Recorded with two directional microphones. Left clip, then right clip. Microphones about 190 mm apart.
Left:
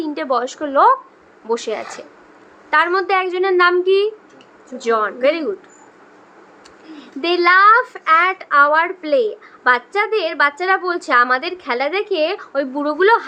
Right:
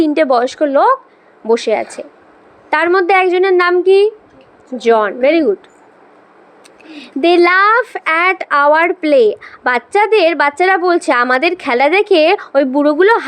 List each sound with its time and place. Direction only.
0.0 s a woman's voice: 35° right (ahead or behind)
6.9 s a woman's voice: 35° right (ahead or behind)